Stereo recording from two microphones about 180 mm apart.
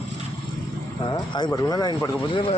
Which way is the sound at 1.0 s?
25° left (ahead or behind).